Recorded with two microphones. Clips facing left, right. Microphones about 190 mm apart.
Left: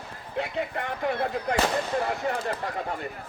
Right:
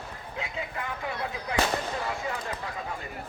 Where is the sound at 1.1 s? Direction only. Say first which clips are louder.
Left 9 dB; 55° left (ahead or behind).